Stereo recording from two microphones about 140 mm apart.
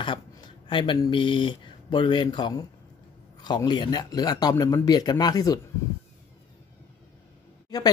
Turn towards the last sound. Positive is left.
turn(degrees=30)  # may be behind; listen again after turning